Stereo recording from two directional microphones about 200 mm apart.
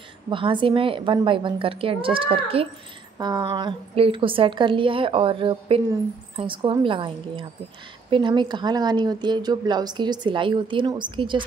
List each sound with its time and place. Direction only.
0.3 s a woman's voice: 25° right (ahead or behind)